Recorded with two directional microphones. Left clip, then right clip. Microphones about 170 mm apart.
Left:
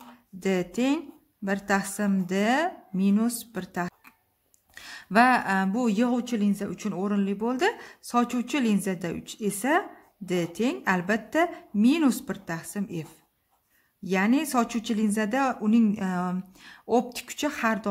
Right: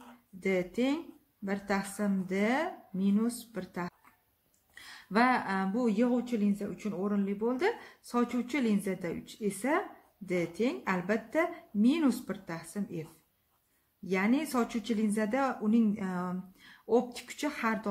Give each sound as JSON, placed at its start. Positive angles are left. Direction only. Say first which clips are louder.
{"t": 0.4, "sound": "speech", "louder": "left 4 dB", "side_deg": 40}
{"t": 14.0, "sound": "speech", "louder": "left 5 dB", "side_deg": 40}